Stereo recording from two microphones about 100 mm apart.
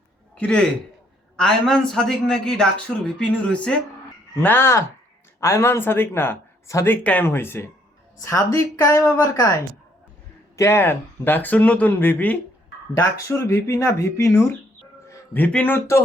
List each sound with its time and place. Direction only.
0.3 s a man's voice: 10° left (ahead or behind)
4.4 s a woman's voice: 25° left (ahead or behind)
10.6 s speech: 25° left (ahead or behind)
15.1 s a sound: 25° left (ahead or behind)
15.4 s speech: 15° left (ahead or behind)